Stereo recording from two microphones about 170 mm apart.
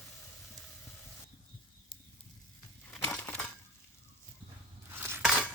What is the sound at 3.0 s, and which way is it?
Crushing, 10° left (ahead or behind).